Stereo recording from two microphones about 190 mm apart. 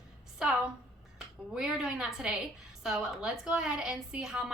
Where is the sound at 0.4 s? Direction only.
5° right (ahead or behind).